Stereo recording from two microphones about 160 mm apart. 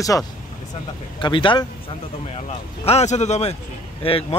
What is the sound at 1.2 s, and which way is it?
Speech, 30° left (ahead or behind).